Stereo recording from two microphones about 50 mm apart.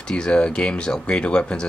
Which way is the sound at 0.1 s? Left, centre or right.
Centre.